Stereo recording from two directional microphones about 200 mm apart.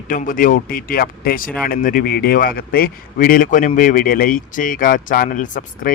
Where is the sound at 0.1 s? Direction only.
45° left (ahead or behind).